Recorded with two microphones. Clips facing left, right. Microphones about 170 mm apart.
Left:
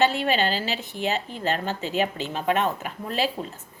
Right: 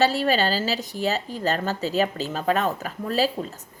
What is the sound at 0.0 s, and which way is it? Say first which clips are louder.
Speech: right 1 dB; 40° right (ahead or behind).